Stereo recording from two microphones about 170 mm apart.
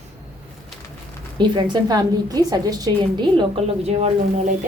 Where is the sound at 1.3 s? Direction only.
25° right (ahead or behind).